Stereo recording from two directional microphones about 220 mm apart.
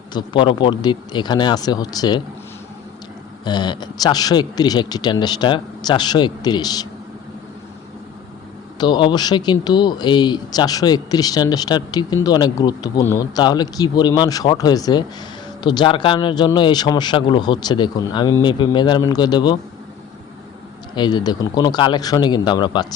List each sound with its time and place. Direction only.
0.1 s speech: 20° left (ahead or behind)
3.4 s speech: 20° left (ahead or behind)
8.8 s speech: 20° left (ahead or behind)
20.9 s speech: 20° left (ahead or behind)